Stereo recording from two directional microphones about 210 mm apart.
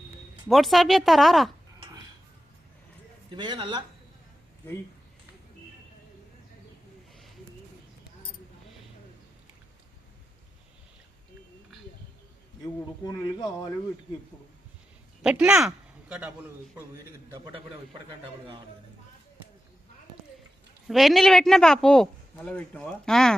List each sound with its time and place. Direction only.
0.4 s speech: centre (ahead or behind)
3.3 s a man's voice: 20° right (ahead or behind)
13.1 s speech: 20° left (ahead or behind)
15.2 s speech: 5° right (ahead or behind)
20.8 s speech: centre (ahead or behind)